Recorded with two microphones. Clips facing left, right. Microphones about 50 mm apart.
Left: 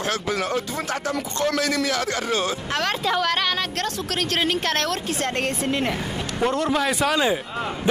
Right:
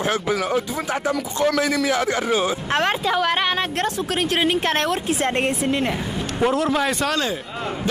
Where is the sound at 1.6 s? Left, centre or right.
Centre.